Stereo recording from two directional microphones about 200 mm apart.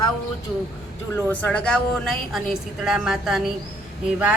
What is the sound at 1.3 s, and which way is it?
A woman's voice, 5° left (ahead or behind).